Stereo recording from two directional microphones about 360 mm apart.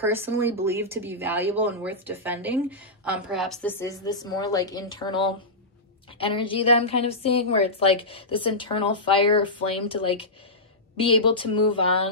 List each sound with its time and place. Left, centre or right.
0.0 s a woman's voice: centre